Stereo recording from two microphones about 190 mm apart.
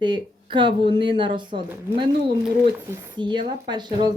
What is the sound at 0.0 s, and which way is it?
A woman's voice, 25° right (ahead or behind).